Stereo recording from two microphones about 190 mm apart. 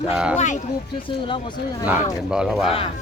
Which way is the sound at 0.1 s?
5° right (ahead or behind).